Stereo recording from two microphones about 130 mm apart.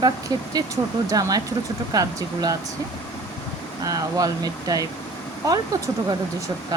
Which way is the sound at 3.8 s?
25° right (ahead or behind).